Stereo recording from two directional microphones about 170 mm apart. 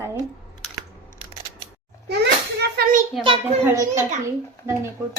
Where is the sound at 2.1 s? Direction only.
75° right (ahead or behind).